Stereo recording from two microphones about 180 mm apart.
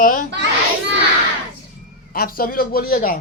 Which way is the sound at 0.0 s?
50° left (ahead or behind).